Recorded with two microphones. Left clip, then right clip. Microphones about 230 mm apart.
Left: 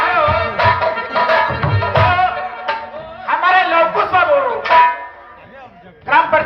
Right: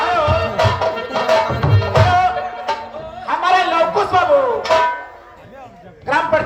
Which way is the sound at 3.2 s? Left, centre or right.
Right.